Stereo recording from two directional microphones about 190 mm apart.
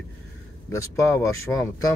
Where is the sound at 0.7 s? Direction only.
15° left (ahead or behind).